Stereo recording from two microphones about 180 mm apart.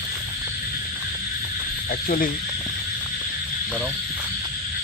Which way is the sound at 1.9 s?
50° left (ahead or behind).